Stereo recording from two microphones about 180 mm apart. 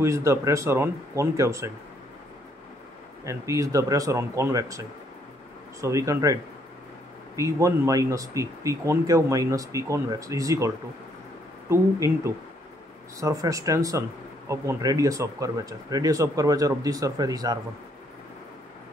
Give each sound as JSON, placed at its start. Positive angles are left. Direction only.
{"t": 0.0, "sound": "speech", "side_deg": -15}
{"t": 3.3, "sound": "speech", "side_deg": -15}
{"t": 11.7, "sound": "speech", "side_deg": -15}